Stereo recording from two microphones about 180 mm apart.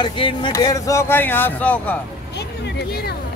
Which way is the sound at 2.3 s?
65° left (ahead or behind).